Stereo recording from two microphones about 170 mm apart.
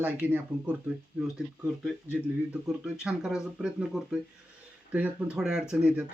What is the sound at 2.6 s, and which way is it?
Speech, 5° right (ahead or behind).